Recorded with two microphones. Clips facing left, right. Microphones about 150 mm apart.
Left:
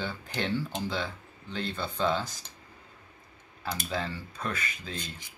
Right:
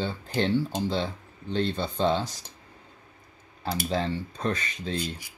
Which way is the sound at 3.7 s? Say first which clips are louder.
Right 5 dB; 30° right (ahead or behind).